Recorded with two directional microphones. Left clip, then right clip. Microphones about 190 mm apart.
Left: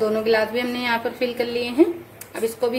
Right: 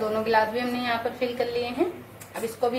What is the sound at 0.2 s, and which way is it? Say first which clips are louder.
Speech: left 3 dB; 55° left (ahead or behind).